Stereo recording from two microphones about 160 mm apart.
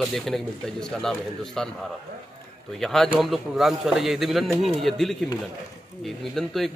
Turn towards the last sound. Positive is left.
turn(degrees=0)  # may be behind; listen again after turning